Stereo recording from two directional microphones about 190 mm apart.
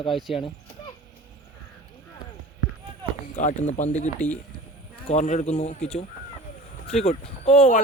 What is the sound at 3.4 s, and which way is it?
Speech, 40° left (ahead or behind).